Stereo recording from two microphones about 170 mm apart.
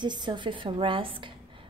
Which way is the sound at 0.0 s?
25° right (ahead or behind).